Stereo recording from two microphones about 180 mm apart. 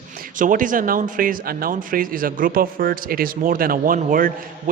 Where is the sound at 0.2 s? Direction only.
45° right (ahead or behind).